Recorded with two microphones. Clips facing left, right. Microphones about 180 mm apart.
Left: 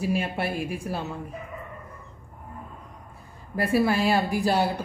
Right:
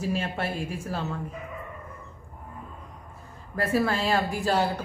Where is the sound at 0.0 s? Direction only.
15° left (ahead or behind).